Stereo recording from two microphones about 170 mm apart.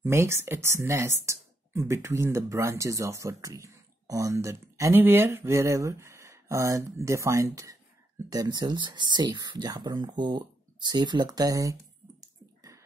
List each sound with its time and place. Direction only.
0.0 s speech: 15° right (ahead or behind)
12.2 s bathtub: 20° right (ahead or behind)